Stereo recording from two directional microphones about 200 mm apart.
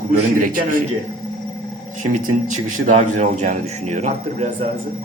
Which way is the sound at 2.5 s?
40° right (ahead or behind).